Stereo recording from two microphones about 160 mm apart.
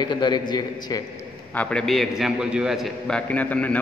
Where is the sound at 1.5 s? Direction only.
5° left (ahead or behind).